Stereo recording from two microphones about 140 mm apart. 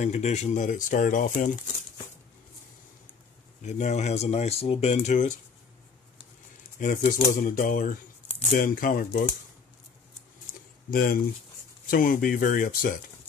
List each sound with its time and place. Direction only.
0.0 s speech: 55° left (ahead or behind)
3.6 s speech: 55° left (ahead or behind)
6.8 s speech: 70° left (ahead or behind)
10.9 s speech: 90° left